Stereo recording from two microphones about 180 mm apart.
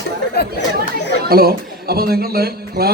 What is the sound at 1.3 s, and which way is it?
A man's voice, 60° right (ahead or behind).